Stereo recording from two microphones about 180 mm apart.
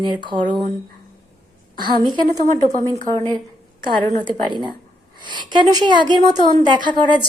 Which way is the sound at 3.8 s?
25° right (ahead or behind).